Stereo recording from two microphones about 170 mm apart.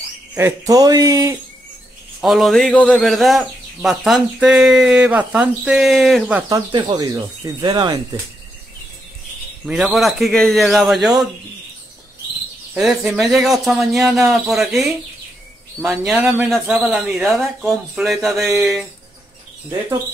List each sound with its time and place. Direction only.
0.3 s speech: 15° right (ahead or behind)
2.2 s speech: centre (ahead or behind)
6.5 s speech: 25° right (ahead or behind)
9.7 s speech: centre (ahead or behind)
12.7 s speech: 5° right (ahead or behind)
16.1 s speech: centre (ahead or behind)